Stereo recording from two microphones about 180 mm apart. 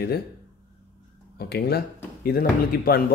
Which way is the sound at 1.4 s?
60° left (ahead or behind).